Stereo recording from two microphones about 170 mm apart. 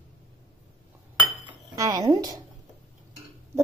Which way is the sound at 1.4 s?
20° right (ahead or behind).